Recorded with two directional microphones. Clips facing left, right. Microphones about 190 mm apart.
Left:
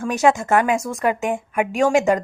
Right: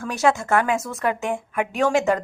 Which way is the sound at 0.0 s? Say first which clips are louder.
Left 3 dB; 15° left (ahead or behind).